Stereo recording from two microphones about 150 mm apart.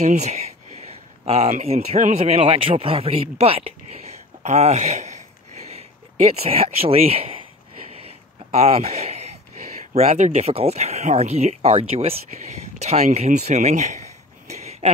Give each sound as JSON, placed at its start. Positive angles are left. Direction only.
{"t": 0.0, "sound": "speech", "side_deg": -50}
{"t": 2.3, "sound": "speech", "side_deg": -35}
{"t": 8.5, "sound": "speech", "side_deg": -45}
{"t": 14.6, "sound": "a sound", "side_deg": -45}